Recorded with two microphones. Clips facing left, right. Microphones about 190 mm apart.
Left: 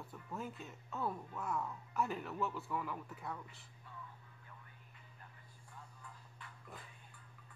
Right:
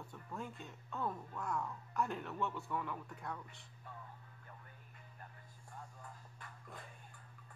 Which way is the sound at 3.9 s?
50° right (ahead or behind).